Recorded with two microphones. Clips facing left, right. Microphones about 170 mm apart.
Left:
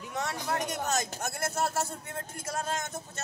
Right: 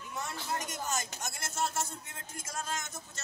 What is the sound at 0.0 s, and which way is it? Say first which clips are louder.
A man's voice: left 6 dB; 75° left (ahead or behind).